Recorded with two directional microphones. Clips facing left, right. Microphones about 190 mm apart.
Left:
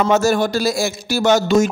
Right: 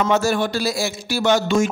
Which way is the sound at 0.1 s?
45° left (ahead or behind).